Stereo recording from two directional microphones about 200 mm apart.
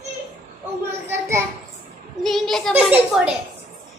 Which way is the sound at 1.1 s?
15° right (ahead or behind).